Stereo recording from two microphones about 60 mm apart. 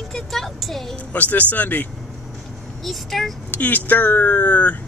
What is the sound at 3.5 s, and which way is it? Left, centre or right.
Speech, left.